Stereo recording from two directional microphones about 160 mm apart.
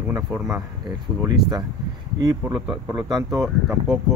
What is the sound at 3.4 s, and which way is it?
Speech, 5° right (ahead or behind).